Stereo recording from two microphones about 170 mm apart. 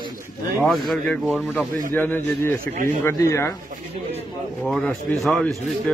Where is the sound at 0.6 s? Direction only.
Centre (ahead or behind).